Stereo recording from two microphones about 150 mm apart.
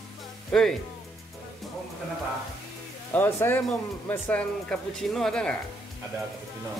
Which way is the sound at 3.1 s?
15° left (ahead or behind).